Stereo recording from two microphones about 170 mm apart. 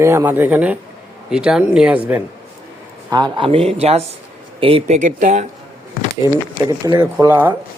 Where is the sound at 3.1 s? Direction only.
25° right (ahead or behind); by 5.4 s 45° right (ahead or behind).